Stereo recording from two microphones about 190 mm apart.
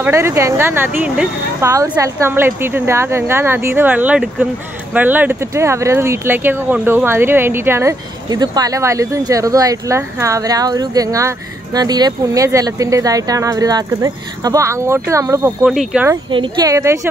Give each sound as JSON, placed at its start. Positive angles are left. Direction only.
{"t": 0.0, "sound": "speech", "side_deg": -15}
{"t": 1.7, "sound": "speech", "side_deg": -15}
{"t": 15.7, "sound": "speech", "side_deg": -5}
{"t": 16.3, "sound": "speech", "side_deg": -25}